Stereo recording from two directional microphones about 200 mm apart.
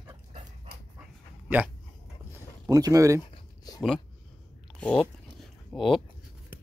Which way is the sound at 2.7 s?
15° right (ahead or behind).